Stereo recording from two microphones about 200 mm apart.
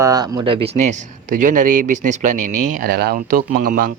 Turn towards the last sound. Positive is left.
turn(degrees=-45)  # may be behind; listen again after turning